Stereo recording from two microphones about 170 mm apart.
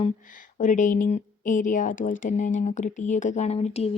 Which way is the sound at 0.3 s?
50° left (ahead or behind).